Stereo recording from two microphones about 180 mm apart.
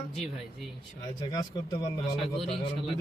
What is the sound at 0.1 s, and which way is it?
Speech, centre (ahead or behind).